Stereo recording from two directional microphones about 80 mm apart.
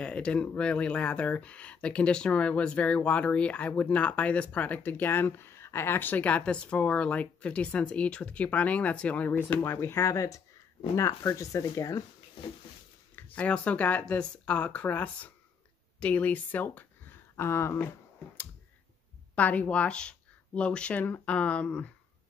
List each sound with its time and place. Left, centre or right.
0.0 s speech: centre; by 12.0 s left
13.1 s speech: centre
17.4 s speech: left
19.3 s speech: centre